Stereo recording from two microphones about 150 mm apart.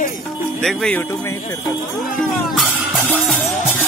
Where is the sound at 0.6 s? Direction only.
5° left (ahead or behind).